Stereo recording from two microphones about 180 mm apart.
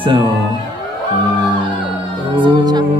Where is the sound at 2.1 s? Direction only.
25° right (ahead or behind).